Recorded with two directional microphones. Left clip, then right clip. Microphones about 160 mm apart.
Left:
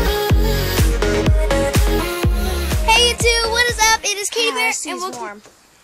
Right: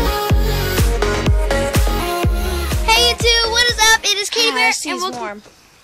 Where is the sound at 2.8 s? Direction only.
10° left (ahead or behind).